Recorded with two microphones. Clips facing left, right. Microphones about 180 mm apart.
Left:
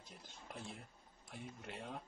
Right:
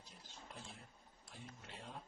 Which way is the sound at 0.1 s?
65° left (ahead or behind).